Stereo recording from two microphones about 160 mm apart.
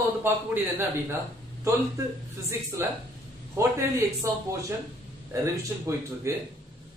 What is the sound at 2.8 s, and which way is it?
A man's voice, 15° right (ahead or behind).